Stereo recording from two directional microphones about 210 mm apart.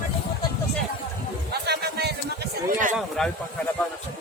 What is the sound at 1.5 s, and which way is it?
Music, 50° right (ahead or behind).